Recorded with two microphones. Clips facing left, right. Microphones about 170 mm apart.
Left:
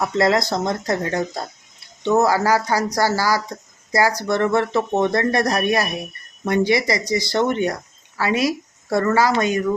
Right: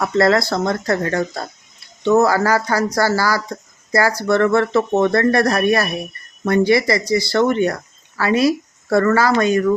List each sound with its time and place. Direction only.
0.2 s speech: 15° left (ahead or behind)